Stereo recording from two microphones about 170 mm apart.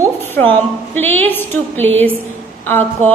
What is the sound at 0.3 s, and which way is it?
A woman's voice, 10° left (ahead or behind).